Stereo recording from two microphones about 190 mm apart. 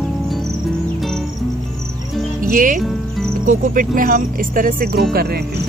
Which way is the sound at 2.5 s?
45° right (ahead or behind).